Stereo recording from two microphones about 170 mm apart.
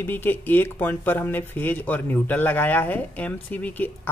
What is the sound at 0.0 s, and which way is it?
Speech, 10° left (ahead or behind).